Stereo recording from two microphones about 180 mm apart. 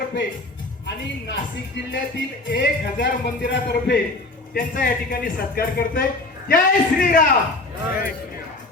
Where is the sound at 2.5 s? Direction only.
75° left (ahead or behind).